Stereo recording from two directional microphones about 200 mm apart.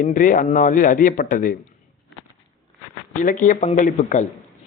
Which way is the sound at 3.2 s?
40° left (ahead or behind).